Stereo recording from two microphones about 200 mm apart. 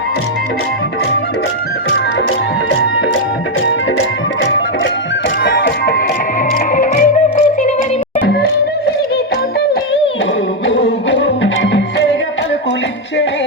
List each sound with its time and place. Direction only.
5.4 s music: 55° left (ahead or behind)
6.7 s music: 40° left (ahead or behind)
10.7 s music: 65° left (ahead or behind)